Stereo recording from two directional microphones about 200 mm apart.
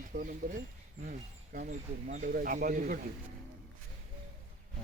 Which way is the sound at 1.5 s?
40° right (ahead or behind).